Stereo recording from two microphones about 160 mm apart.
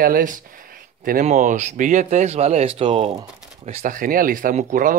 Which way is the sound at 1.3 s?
45° right (ahead or behind).